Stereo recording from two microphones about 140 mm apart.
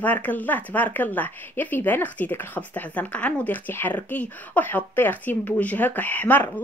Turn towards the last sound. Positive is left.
turn(degrees=15)  # may be behind; listen again after turning